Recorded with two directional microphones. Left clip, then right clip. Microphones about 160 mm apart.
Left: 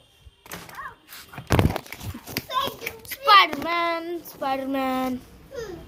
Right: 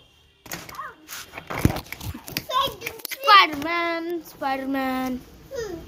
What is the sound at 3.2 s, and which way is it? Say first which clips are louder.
Child singing: right 1 dB; 90° left.